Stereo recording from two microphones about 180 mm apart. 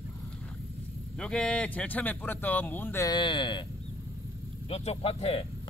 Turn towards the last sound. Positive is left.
turn(degrees=35)  # may be behind; listen again after turning